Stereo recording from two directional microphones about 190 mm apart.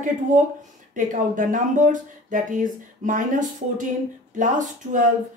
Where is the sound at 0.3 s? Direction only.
45° right (ahead or behind).